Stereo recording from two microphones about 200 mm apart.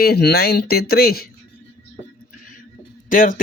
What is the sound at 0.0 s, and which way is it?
Speech, 55° left (ahead or behind).